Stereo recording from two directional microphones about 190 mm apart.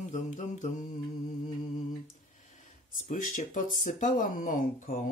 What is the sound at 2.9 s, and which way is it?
Speech, 45° left (ahead or behind).